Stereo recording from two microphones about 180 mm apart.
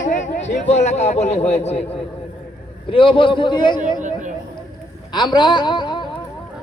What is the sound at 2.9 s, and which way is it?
Speech, 30° left (ahead or behind).